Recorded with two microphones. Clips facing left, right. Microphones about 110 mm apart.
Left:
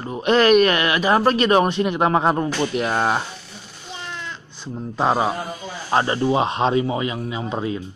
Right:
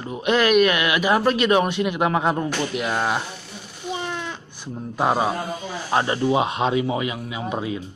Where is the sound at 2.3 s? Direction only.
20° left (ahead or behind).